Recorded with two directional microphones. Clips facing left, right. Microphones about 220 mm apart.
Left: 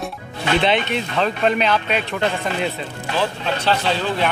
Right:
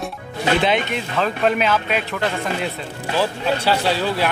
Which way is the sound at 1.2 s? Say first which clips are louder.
Even; 5° right (ahead or behind).